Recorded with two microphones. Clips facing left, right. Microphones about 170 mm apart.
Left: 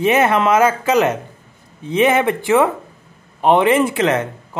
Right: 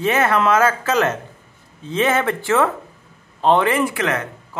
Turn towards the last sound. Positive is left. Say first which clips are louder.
# left 5 dB
turn(degrees=25)  # may be behind; listen again after turning